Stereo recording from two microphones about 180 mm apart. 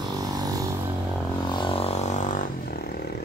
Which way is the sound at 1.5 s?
30° left (ahead or behind).